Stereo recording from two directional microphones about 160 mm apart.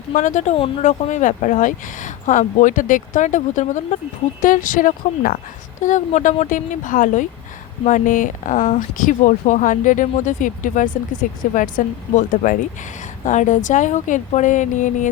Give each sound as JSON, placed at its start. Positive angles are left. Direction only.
{"t": 0.1, "sound": "speech", "side_deg": 50}